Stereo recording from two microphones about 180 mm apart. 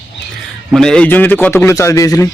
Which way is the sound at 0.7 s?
5° left (ahead or behind).